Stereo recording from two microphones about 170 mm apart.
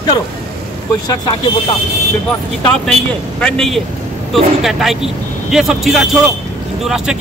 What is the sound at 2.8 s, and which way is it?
Speech, 5° left (ahead or behind).